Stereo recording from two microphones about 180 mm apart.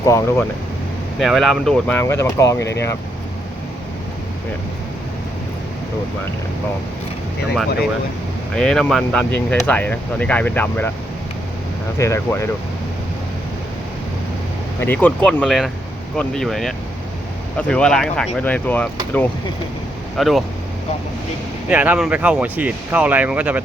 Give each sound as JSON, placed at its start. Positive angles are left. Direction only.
{"t": 0.0, "sound": "speech", "side_deg": 15}
{"t": 1.2, "sound": "speech", "side_deg": 0}
{"t": 8.5, "sound": "speech", "side_deg": 5}
{"t": 11.9, "sound": "speech", "side_deg": 15}
{"t": 14.8, "sound": "speech", "side_deg": 10}
{"t": 20.1, "sound": "speech", "side_deg": 0}
{"t": 21.7, "sound": "speech", "side_deg": -10}